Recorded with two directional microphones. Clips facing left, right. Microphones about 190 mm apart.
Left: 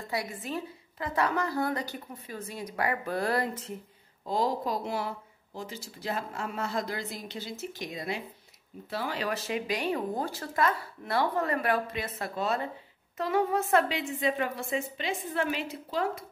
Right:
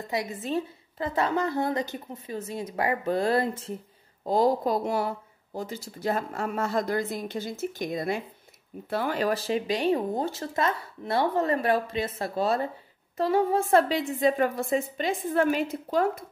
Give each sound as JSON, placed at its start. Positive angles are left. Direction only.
{"t": 0.1, "sound": "a woman's voice", "side_deg": -20}
{"t": 4.2, "sound": "speech", "side_deg": -40}
{"t": 9.3, "sound": "a woman's voice", "side_deg": -30}
{"t": 14.0, "sound": "speech", "side_deg": -45}